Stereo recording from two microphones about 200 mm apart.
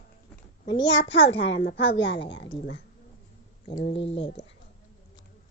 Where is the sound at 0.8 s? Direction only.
60° left (ahead or behind).